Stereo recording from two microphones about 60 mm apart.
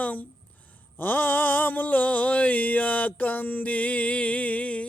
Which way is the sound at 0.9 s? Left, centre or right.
Left.